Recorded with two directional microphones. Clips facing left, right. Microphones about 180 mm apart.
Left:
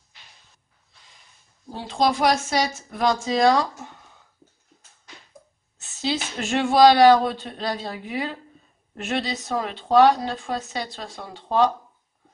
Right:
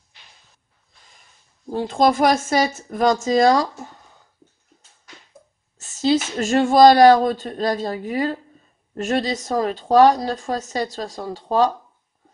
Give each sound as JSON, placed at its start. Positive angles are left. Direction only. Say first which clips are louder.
{"t": 1.7, "sound": "speech", "louder": "right 5 dB", "side_deg": -50}
{"t": 5.8, "sound": "a woman's voice", "louder": "right 8 dB", "side_deg": -45}